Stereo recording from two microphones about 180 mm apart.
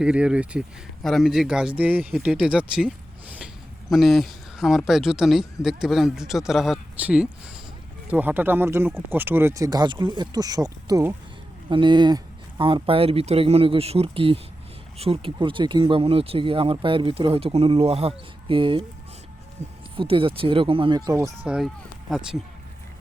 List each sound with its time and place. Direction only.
0.0 s speech: 5° right (ahead or behind)
21.4 s speech: 5° right (ahead or behind)